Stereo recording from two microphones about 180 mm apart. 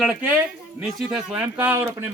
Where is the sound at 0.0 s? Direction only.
10° right (ahead or behind).